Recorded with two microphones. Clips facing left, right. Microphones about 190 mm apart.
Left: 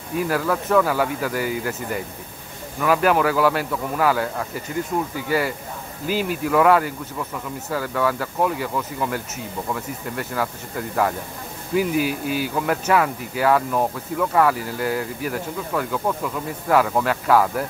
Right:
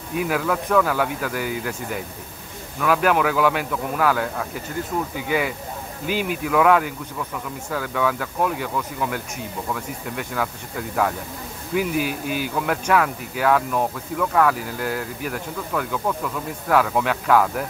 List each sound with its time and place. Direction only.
0.1 s speech: centre (ahead or behind)
6.2 s speech: centre (ahead or behind)
12.1 s speech: 50° right (ahead or behind)
12.5 s speech: 5° left (ahead or behind)